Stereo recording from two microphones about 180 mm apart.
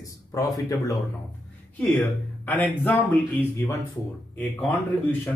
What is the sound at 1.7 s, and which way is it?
Speech, 10° left (ahead or behind).